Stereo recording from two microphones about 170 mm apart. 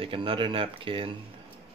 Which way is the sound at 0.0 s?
30° right (ahead or behind).